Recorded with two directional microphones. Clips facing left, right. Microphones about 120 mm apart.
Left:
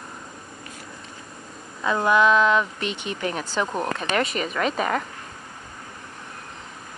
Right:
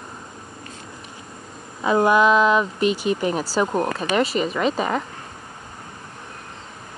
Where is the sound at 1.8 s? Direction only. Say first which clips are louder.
Right 3 dB; 20° right (ahead or behind).